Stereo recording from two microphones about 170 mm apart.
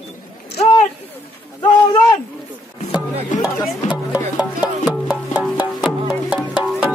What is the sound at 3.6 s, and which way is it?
Music, 5° right (ahead or behind).